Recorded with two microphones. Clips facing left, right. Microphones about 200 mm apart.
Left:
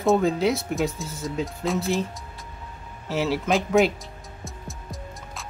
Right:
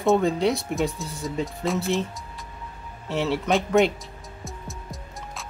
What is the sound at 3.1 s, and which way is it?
Speech, centre (ahead or behind).